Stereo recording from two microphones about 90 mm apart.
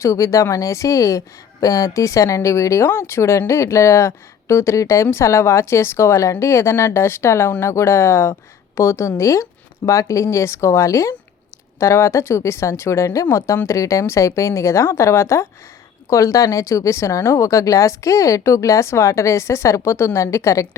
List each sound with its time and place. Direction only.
0.0 s speech: 35° left (ahead or behind)